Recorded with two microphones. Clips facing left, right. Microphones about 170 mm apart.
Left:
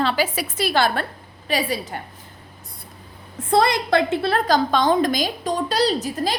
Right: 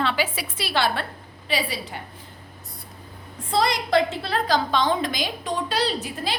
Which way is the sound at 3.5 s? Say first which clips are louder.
Left 4 dB; 55° left (ahead or behind).